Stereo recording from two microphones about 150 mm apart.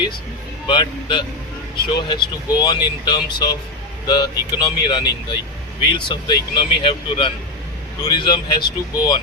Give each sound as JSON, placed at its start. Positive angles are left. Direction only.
{"t": 0.7, "sound": "speech", "side_deg": 30}